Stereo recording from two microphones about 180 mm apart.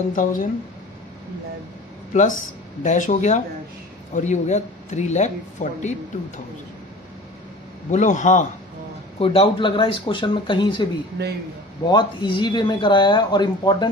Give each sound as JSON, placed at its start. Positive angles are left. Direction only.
{"t": 0.1, "sound": "speech", "side_deg": 50}
{"t": 2.1, "sound": "a woman's voice", "side_deg": 45}
{"t": 7.9, "sound": "speech", "side_deg": 40}
{"t": 9.2, "sound": "speech", "side_deg": 30}
{"t": 11.2, "sound": "a man's voice", "side_deg": -70}
{"t": 11.8, "sound": "speech", "side_deg": 25}